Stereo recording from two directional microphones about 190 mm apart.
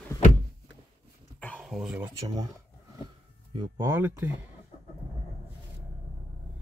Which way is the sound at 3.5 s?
25° right (ahead or behind).